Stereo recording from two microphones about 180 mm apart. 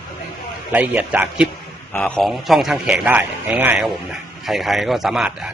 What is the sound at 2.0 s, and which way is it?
A man's voice, 5° left (ahead or behind).